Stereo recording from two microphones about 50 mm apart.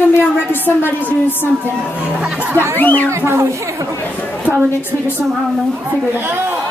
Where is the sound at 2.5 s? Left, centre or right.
Right.